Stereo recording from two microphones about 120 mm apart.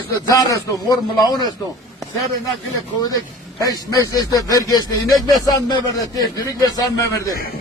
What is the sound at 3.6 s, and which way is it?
Speech, 30° left (ahead or behind).